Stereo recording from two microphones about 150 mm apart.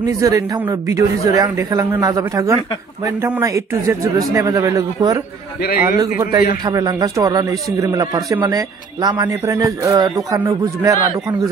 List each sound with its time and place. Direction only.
0.0 s speech: 20° right (ahead or behind)
5.6 s a man's voice: 85° left
5.9 s speech: 25° right (ahead or behind)